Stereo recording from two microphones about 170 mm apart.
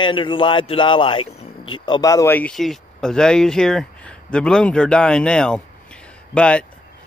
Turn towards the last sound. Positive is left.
turn(degrees=5)  # may be behind; listen again after turning